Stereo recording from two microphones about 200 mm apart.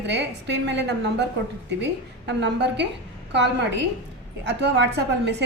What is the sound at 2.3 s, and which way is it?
A woman's voice, 60° right (ahead or behind).